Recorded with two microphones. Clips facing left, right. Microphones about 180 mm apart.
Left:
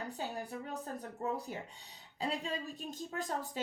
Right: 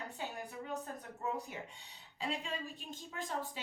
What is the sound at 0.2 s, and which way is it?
A woman's voice, 40° left (ahead or behind).